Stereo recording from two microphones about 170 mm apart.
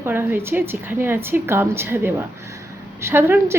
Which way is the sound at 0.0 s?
15° right (ahead or behind).